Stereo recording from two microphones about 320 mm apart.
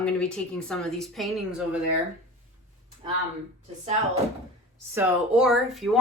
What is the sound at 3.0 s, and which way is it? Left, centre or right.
Speech, centre.